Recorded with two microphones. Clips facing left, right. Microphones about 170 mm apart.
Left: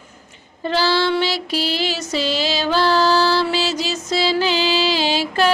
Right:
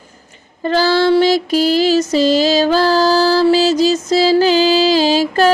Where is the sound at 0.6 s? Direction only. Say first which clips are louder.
Right 5 dB; 45° right (ahead or behind).